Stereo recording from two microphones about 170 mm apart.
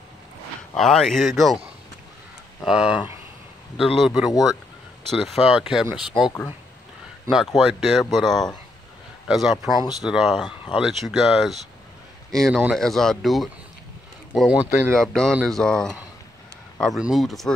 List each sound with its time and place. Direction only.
0.7 s speech: 5° left (ahead or behind)
2.6 s speech: 5° right (ahead or behind)
7.2 s speech: centre (ahead or behind)